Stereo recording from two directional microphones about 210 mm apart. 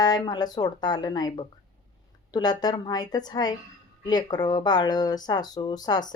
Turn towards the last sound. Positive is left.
turn(degrees=20)  # may be behind; listen again after turning